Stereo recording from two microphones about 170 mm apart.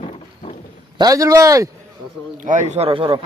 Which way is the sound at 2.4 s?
45° right (ahead or behind).